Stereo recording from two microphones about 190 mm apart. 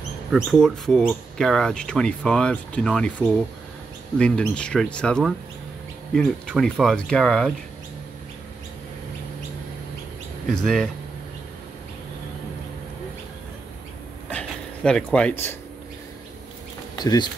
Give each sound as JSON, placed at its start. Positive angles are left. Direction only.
{"t": 0.3, "sound": "speech", "side_deg": 0}
{"t": 10.5, "sound": "speech", "side_deg": 5}
{"t": 14.3, "sound": "a sound", "side_deg": 5}
{"t": 16.9, "sound": "speech", "side_deg": 20}